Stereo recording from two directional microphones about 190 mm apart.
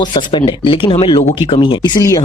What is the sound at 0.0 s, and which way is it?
Speech, 25° left (ahead or behind).